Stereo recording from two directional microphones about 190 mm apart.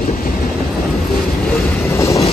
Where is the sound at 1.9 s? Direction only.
15° left (ahead or behind).